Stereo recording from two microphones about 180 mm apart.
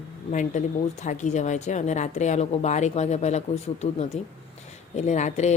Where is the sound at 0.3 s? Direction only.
40° left (ahead or behind).